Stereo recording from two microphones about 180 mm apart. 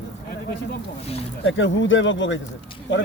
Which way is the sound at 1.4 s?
90° left.